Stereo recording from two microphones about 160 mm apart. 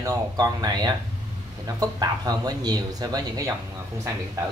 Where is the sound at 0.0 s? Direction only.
25° right (ahead or behind).